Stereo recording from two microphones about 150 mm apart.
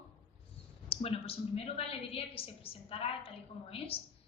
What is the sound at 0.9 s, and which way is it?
A woman's voice, 40° left (ahead or behind).